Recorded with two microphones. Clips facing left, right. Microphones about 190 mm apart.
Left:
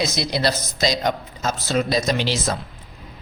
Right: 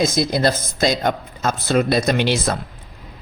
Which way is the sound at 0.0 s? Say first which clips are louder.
Right 4 dB; 50° right (ahead or behind).